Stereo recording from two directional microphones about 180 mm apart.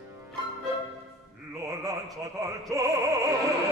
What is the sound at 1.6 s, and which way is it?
Opera, 20° right (ahead or behind).